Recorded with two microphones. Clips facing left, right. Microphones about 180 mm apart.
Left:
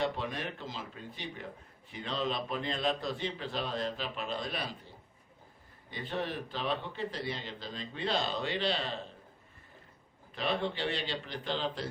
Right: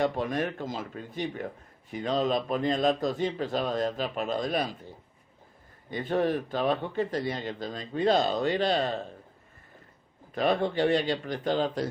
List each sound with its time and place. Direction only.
0.0 s speech: 45° right (ahead or behind)
5.9 s speech: 45° right (ahead or behind)
10.3 s speech: 45° right (ahead or behind)